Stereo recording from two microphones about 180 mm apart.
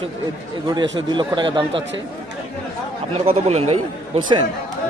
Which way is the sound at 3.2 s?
35° right (ahead or behind).